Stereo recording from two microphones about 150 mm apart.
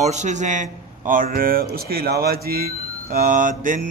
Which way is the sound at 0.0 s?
50° right (ahead or behind).